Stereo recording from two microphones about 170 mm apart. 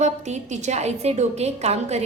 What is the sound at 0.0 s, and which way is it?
A woman's voice, 45° right (ahead or behind).